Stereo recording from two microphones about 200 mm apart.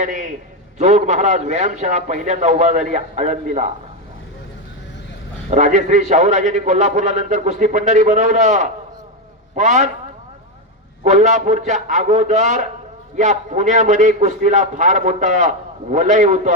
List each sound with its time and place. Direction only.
0.0 s a man's voice: 40° right (ahead or behind)
5.5 s a man's voice: 35° right (ahead or behind)
11.0 s a man's voice: 35° right (ahead or behind)